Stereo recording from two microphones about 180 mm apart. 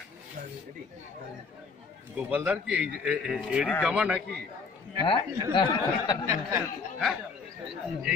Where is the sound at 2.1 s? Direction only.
10° right (ahead or behind).